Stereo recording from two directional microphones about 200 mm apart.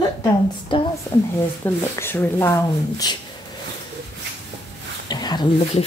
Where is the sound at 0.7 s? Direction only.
25° left (ahead or behind).